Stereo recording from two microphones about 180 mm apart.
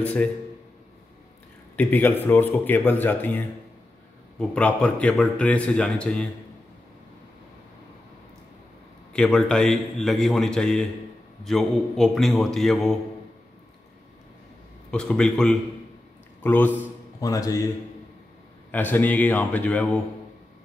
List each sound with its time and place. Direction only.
0.0 s a man's voice: 10° left (ahead or behind)
1.8 s a man's voice: 10° left (ahead or behind)
9.1 s a man's voice: 5° left (ahead or behind)
14.9 s a man's voice: 5° left (ahead or behind)
18.7 s a man's voice: 10° left (ahead or behind)